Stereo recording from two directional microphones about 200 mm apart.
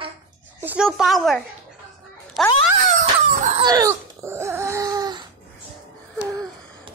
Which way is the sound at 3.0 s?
35° right (ahead or behind).